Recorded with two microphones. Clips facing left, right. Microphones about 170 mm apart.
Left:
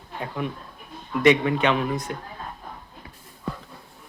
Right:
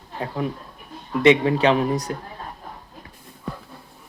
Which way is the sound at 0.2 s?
30° right (ahead or behind).